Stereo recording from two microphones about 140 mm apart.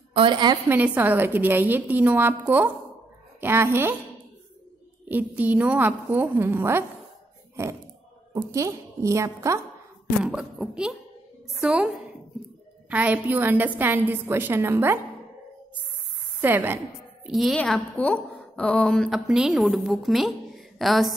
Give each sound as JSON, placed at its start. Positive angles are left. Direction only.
{"t": 0.1, "sound": "a woman's voice", "side_deg": -35}
{"t": 0.7, "sound": "a woman's voice", "side_deg": -10}
{"t": 5.0, "sound": "a woman's voice", "side_deg": -10}
{"t": 10.2, "sound": "a woman's voice", "side_deg": -5}
{"t": 16.3, "sound": "a woman's voice", "side_deg": -15}
{"t": 17.3, "sound": "a woman's voice", "side_deg": 0}